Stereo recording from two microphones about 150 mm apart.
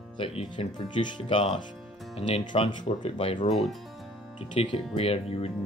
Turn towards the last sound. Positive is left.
turn(degrees=40)  # may be behind; listen again after turning